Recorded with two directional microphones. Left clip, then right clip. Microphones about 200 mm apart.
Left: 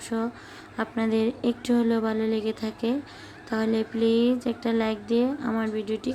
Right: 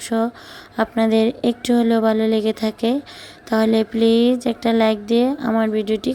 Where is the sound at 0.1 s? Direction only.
35° right (ahead or behind).